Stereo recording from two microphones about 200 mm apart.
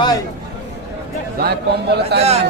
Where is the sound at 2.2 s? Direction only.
30° right (ahead or behind).